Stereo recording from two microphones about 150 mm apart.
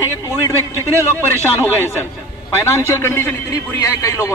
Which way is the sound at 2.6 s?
15° left (ahead or behind).